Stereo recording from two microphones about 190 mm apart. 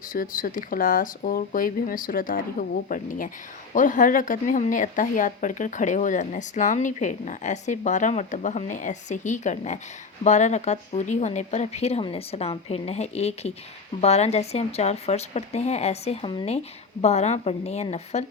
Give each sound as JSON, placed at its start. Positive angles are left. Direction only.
{"t": 0.1, "sound": "speech", "side_deg": 45}
{"t": 17.0, "sound": "speech", "side_deg": 35}